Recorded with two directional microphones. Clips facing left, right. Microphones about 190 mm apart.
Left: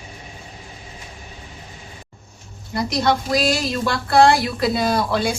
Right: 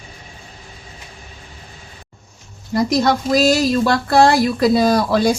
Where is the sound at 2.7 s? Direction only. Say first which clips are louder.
Right 4 dB; 45° right (ahead or behind).